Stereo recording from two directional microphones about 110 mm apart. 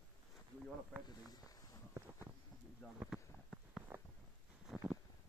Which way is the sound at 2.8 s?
10° left (ahead or behind).